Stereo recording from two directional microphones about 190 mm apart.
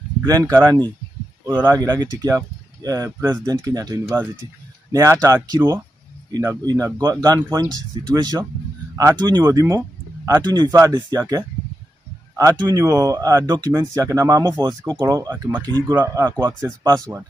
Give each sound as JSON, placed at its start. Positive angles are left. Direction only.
{"t": 0.3, "sound": "speech", "side_deg": -20}